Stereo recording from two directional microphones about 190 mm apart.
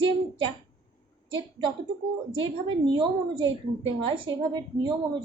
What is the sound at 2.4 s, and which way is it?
A woman's voice, 25° right (ahead or behind).